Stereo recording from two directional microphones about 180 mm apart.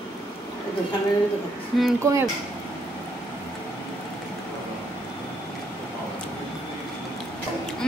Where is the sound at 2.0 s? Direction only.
15° right (ahead or behind).